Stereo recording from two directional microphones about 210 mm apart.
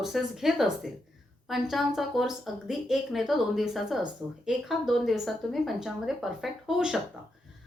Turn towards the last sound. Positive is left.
turn(degrees=-5)  # may be behind; listen again after turning